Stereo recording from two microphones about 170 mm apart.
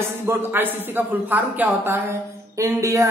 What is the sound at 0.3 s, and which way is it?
Speech, 10° right (ahead or behind).